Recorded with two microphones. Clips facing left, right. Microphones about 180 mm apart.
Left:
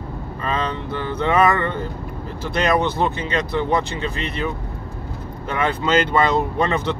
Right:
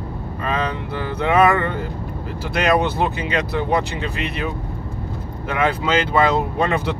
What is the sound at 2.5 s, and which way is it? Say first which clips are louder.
Speech: right 1 dB; 10° right (ahead or behind).